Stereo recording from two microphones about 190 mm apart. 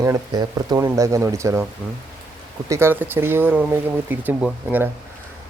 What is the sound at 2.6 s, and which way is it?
Speech, 15° right (ahead or behind).